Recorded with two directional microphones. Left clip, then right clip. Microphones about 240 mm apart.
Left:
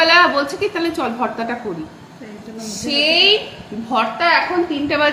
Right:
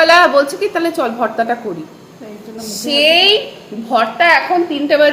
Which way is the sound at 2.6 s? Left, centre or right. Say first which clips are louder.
Right 5 dB; centre.